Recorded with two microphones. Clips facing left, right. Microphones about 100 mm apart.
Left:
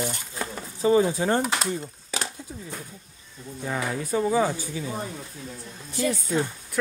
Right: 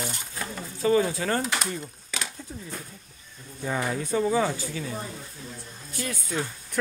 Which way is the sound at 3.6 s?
Centre (ahead or behind).